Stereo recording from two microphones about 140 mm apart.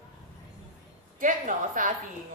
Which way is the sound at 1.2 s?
70° right (ahead or behind).